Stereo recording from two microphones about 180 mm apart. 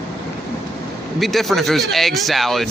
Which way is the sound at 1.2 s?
Centre (ahead or behind).